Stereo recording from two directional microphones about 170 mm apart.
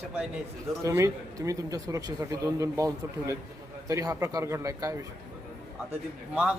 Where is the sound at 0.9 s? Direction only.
20° right (ahead or behind).